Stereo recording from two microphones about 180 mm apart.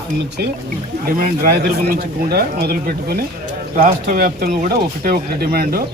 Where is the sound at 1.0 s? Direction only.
55° right (ahead or behind).